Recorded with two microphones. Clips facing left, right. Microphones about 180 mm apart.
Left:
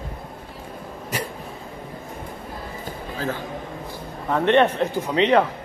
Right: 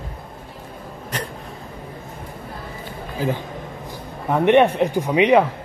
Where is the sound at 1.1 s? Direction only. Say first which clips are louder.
Even; 10° left (ahead or behind).